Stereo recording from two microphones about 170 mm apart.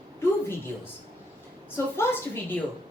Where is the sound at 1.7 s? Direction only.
15° left (ahead or behind).